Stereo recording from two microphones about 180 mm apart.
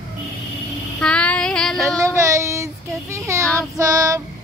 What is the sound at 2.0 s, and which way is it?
Child singing, 15° right (ahead or behind).